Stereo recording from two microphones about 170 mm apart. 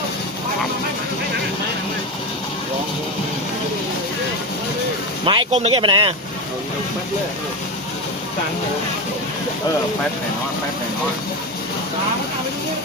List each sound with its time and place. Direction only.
5.2 s speech: 30° right (ahead or behind)